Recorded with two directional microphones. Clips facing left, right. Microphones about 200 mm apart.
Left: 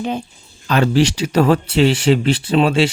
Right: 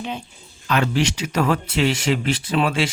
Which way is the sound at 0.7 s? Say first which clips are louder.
Left 6 dB; 35° left (ahead or behind).